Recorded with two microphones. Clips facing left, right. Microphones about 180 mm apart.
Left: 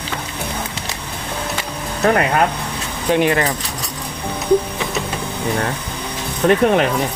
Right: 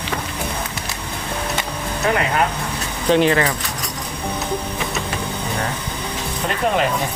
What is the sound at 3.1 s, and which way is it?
Speech, 10° left (ahead or behind).